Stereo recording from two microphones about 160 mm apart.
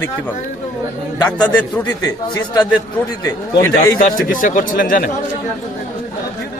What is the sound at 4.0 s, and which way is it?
A man's voice, 60° left (ahead or behind).